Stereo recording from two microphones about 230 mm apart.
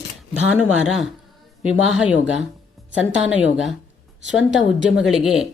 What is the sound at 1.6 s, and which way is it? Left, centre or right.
Speech, centre.